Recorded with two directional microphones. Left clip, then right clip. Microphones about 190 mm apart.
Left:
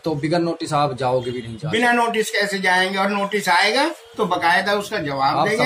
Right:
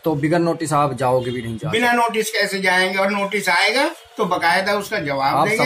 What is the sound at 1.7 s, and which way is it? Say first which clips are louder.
A man's voice: even; centre (ahead or behind).